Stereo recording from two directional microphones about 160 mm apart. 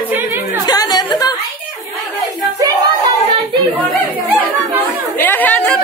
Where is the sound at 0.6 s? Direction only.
25° left (ahead or behind).